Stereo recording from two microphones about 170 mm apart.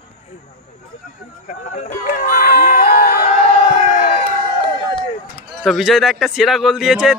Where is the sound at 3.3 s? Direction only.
35° left (ahead or behind).